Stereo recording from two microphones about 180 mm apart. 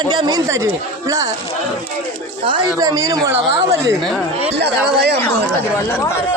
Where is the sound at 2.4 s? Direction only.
25° right (ahead or behind).